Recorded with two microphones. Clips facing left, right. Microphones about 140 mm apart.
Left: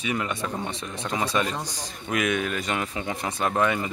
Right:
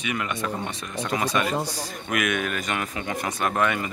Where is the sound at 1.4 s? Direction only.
10° right (ahead or behind).